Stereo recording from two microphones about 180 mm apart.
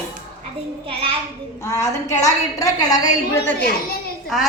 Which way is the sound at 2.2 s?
20° left (ahead or behind).